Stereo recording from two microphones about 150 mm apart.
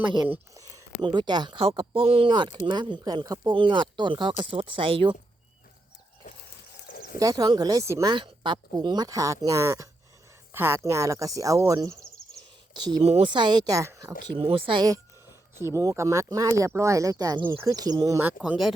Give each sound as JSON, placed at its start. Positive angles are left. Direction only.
{"t": 0.5, "sound": "speech", "side_deg": -25}
{"t": 6.8, "sound": "a sound", "side_deg": 90}
{"t": 7.2, "sound": "speech", "side_deg": -25}
{"t": 8.1, "sound": "speech", "side_deg": -30}
{"t": 13.0, "sound": "speech", "side_deg": -45}